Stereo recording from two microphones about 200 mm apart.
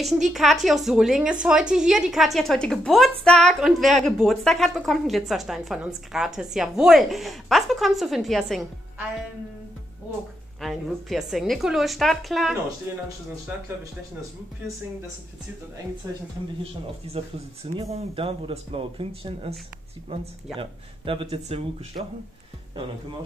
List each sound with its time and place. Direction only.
0.3 s a woman's voice: centre (ahead or behind)
10.6 s a woman's voice: centre (ahead or behind)
12.9 s speech: 15° right (ahead or behind)
17.0 s speech: 30° right (ahead or behind)
20.5 s speech: 25° right (ahead or behind)